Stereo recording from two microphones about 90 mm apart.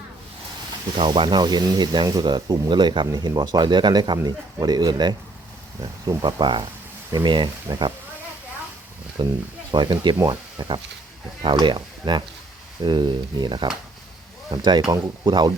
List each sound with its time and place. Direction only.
0.9 s speech: 70° right (ahead or behind)
3.1 s speech: 50° right (ahead or behind)
9.2 s speech: 55° right (ahead or behind)